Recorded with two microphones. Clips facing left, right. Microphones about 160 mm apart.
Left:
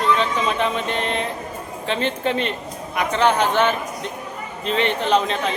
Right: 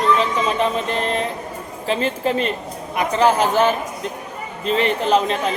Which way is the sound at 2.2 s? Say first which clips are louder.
Right 2 dB; 40° right (ahead or behind).